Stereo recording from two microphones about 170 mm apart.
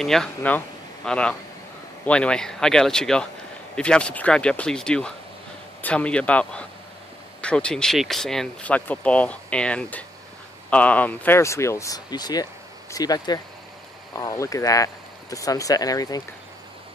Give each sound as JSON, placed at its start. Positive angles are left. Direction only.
{"t": 0.0, "sound": "speech", "side_deg": 5}